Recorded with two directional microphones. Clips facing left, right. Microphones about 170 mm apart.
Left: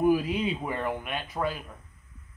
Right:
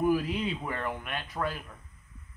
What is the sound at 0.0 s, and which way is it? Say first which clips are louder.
Speech: left 3 dB; 15° left (ahead or behind).